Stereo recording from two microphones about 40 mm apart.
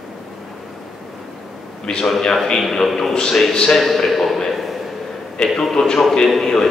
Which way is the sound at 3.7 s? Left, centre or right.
Centre.